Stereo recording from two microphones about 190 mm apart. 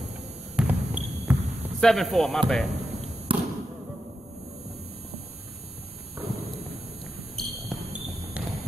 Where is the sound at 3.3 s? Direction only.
25° right (ahead or behind).